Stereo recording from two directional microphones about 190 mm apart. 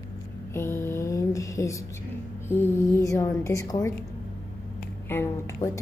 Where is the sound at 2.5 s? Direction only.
10° left (ahead or behind).